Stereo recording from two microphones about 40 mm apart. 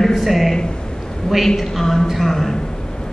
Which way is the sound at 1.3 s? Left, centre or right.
Centre.